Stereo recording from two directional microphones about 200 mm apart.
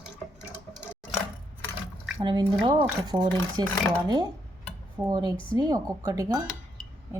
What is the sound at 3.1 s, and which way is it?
Speech, 10° right (ahead or behind).